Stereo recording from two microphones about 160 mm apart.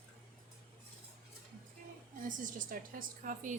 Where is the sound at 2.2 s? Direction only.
55° right (ahead or behind).